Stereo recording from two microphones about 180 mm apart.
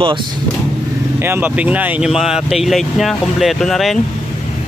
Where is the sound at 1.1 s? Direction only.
10° right (ahead or behind).